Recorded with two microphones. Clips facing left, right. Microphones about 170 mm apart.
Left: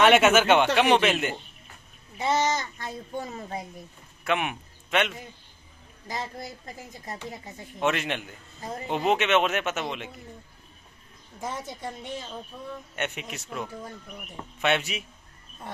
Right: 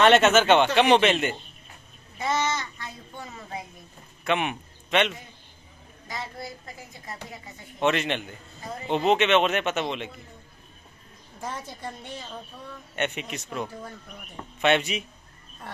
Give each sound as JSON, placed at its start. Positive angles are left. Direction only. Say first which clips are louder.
{"t": 0.0, "sound": "a man's voice", "louder": "right 1 dB", "side_deg": 10}
{"t": 2.1, "sound": "a sound", "louder": "left 2 dB", "side_deg": 35}
{"t": 4.2, "sound": "speech", "louder": "right 1 dB", "side_deg": 5}
{"t": 7.8, "sound": "a man's voice", "louder": "right 2 dB", "side_deg": 5}
{"t": 11.4, "sound": "a woman's voice", "louder": "left 1 dB", "side_deg": 20}
{"t": 12.9, "sound": "a man's voice", "louder": "right 5 dB", "side_deg": 5}